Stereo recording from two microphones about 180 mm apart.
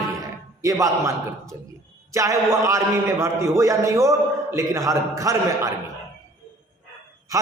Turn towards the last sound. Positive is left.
turn(degrees=-20)  # may be behind; listen again after turning